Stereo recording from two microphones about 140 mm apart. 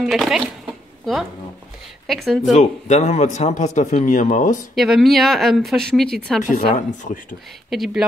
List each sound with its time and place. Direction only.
0.0 s speech: 5° right (ahead or behind)
2.0 s speech: centre (ahead or behind)
2.5 s speech: 55° left (ahead or behind)
4.7 s speech: centre (ahead or behind)
6.5 s speech: 65° left (ahead or behind)
7.7 s speech: centre (ahead or behind)